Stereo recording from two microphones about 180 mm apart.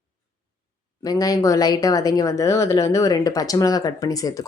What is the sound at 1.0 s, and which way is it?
Speech, 20° left (ahead or behind).